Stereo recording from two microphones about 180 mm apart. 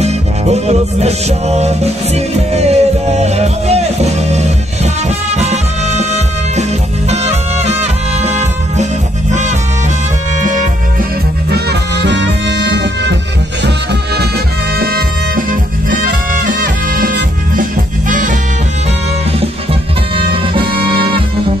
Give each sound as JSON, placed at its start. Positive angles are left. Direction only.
{"t": 0.0, "sound": "music", "side_deg": -35}
{"t": 11.5, "sound": "music", "side_deg": -75}
{"t": 14.8, "sound": "music", "side_deg": -55}
{"t": 16.4, "sound": "music", "side_deg": -50}
{"t": 20.8, "sound": "music", "side_deg": -30}